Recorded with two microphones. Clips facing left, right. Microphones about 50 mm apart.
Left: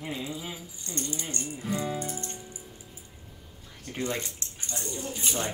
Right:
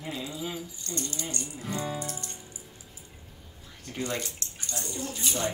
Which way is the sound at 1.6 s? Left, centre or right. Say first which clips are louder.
Left 2 dB; centre.